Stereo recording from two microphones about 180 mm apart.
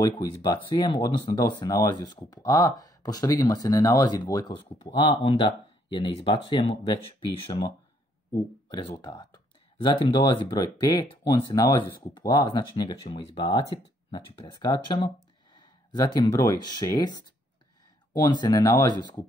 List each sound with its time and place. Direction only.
0.0 s speech: 20° left (ahead or behind)